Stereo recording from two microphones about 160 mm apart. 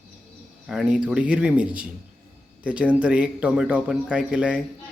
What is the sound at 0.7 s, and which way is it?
Speech, 5° right (ahead or behind).